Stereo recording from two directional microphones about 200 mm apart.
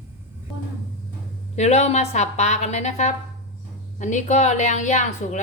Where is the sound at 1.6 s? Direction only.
35° left (ahead or behind).